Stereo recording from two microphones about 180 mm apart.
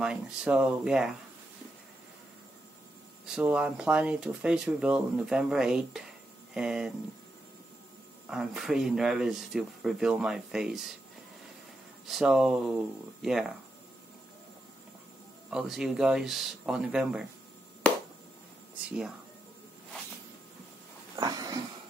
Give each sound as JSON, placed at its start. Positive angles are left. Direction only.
{"t": 0.0, "sound": "speech", "side_deg": -5}
{"t": 3.3, "sound": "speech", "side_deg": -5}
{"t": 8.3, "sound": "speech", "side_deg": 0}
{"t": 12.1, "sound": "speech", "side_deg": 0}
{"t": 15.5, "sound": "speech", "side_deg": 0}
{"t": 18.9, "sound": "speech", "side_deg": -5}
{"t": 21.2, "sound": "a sound", "side_deg": -20}